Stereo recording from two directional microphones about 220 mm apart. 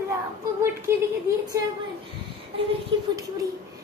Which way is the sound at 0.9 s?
10° right (ahead or behind).